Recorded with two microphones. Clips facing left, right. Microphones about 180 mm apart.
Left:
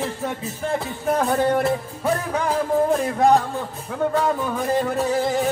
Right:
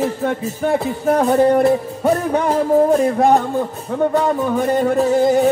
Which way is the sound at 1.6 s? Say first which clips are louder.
Right 7 dB; 35° right (ahead or behind).